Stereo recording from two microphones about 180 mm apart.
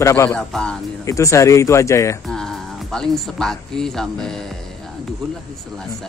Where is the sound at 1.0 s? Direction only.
15° left (ahead or behind).